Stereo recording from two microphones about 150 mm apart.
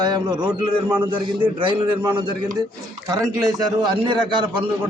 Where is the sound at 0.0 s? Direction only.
30° right (ahead or behind).